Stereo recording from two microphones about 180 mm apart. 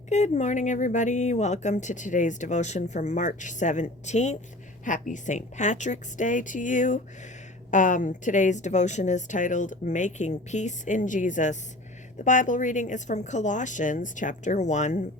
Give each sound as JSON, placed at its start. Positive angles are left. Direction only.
{"t": 0.1, "sound": "a woman's voice", "side_deg": 40}